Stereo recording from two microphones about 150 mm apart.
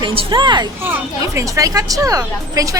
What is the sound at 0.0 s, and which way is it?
Speech, 35° right (ahead or behind).